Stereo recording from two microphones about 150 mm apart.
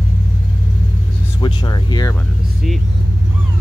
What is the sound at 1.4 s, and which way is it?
Speech, 30° left (ahead or behind).